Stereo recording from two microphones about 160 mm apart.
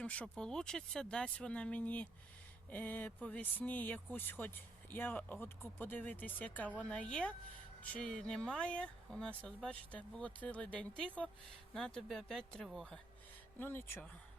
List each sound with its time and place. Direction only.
0.0 s speech: 5° left (ahead or behind)
13.6 s speech: 15° left (ahead or behind)